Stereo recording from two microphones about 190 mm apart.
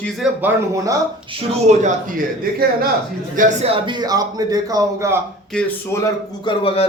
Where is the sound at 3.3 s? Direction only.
45° right (ahead or behind).